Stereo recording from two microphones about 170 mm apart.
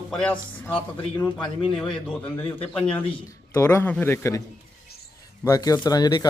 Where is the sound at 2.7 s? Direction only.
5° left (ahead or behind).